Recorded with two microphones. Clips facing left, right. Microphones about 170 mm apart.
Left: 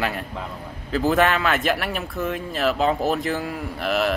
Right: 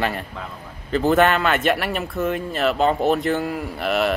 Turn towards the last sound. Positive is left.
turn(degrees=0)  # may be behind; listen again after turning